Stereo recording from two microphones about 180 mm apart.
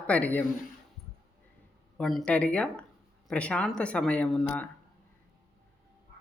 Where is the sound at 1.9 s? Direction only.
5° left (ahead or behind).